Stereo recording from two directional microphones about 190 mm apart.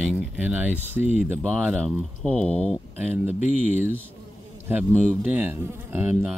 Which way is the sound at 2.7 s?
10° right (ahead or behind).